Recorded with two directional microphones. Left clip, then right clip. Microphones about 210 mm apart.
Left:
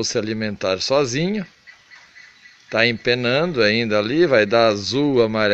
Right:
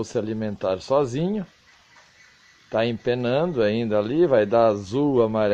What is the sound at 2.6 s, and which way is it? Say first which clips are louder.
Speech: left 5 dB; 15° left (ahead or behind).